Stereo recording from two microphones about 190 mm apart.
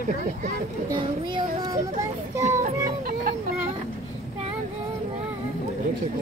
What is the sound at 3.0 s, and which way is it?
Children playing, 50° right (ahead or behind).